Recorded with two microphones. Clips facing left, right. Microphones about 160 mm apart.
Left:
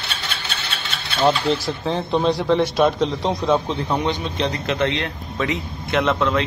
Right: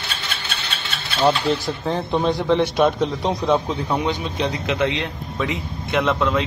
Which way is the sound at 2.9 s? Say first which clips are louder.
Even; 10° right (ahead or behind).